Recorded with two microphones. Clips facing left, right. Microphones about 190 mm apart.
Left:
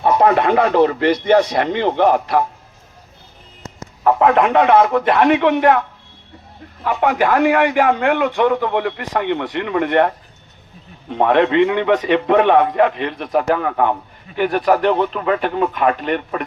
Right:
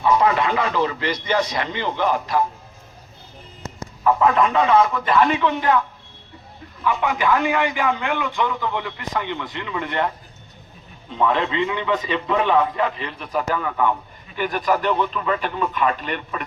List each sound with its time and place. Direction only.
0.0 s speech: 55° left (ahead or behind)
4.0 s speech: 65° left (ahead or behind)
6.8 s a man's voice: 65° left (ahead or behind)